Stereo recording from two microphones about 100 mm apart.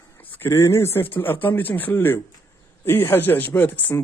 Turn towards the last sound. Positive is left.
turn(degrees=15)  # may be behind; listen again after turning